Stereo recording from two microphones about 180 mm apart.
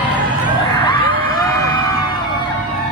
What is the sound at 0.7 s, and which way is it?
Crowd, 25° left (ahead or behind).